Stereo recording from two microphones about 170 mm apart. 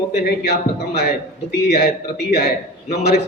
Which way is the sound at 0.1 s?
70° left (ahead or behind).